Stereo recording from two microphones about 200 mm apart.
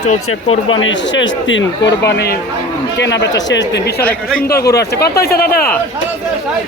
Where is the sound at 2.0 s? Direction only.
55° left (ahead or behind).